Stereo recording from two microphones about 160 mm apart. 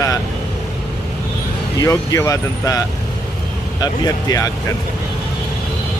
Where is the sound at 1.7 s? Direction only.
20° left (ahead or behind).